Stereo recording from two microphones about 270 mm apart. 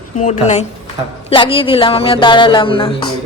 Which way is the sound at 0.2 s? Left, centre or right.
Left.